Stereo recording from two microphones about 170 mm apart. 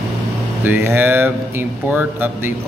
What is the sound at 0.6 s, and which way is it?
Speech, 10° right (ahead or behind).